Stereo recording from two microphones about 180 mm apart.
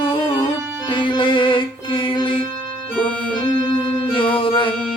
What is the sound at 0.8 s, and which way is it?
Music, 25° left (ahead or behind).